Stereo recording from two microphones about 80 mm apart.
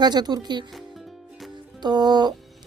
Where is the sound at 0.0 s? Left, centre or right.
Right.